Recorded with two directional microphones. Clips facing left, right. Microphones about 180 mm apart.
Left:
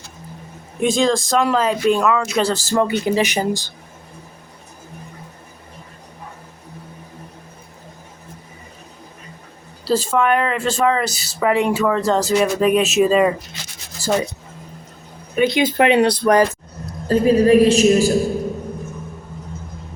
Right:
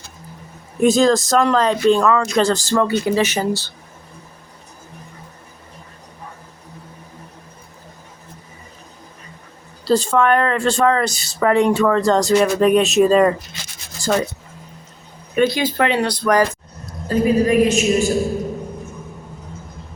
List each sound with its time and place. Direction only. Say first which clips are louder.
0.8 s speech: right 3 dB; 5° right (ahead or behind)
2.7 s speech: left 1 dB; 15° left (ahead or behind)
9.8 s speech: right 2 dB; 5° left (ahead or behind)
15.4 s a woman's voice: left 8 dB; 20° left (ahead or behind)